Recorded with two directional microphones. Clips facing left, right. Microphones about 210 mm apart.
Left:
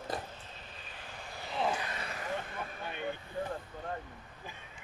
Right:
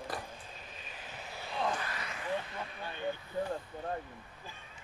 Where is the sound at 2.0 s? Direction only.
40° left (ahead or behind).